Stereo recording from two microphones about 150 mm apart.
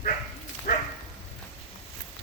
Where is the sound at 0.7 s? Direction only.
85° left.